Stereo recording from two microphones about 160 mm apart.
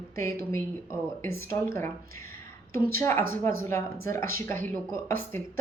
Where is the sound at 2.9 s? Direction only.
15° left (ahead or behind).